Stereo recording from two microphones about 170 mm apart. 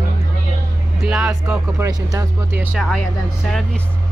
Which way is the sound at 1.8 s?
20° right (ahead or behind).